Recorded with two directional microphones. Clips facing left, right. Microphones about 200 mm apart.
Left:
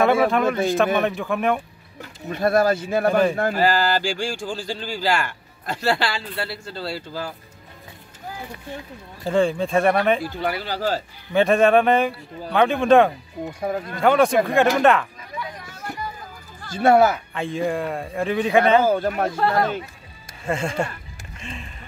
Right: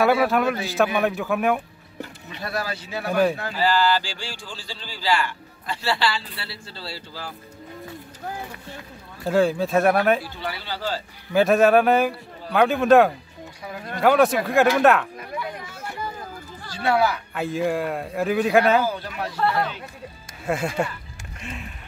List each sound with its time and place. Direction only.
0.0 s a man's voice: 5° right (ahead or behind)
2.2 s speech: 50° left (ahead or behind)
9.2 s a man's voice: 5° right (ahead or behind)
10.3 s speech: 50° left (ahead or behind)
11.3 s a man's voice: 5° right (ahead or behind)
13.5 s speech: 50° left (ahead or behind)
13.9 s a man's voice: 5° right (ahead or behind)
16.7 s speech: 50° left (ahead or behind)
17.3 s a man's voice: 5° right (ahead or behind)
18.9 s speech: 50° left (ahead or behind)
20.4 s a man's voice: 5° right (ahead or behind)
21.5 s a sound: 5° right (ahead or behind)